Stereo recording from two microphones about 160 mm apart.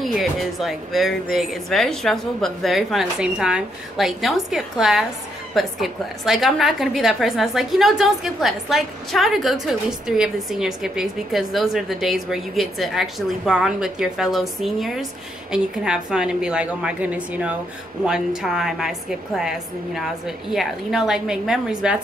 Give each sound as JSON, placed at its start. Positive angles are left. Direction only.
{"t": 0.0, "sound": "a woman's voice", "side_deg": 0}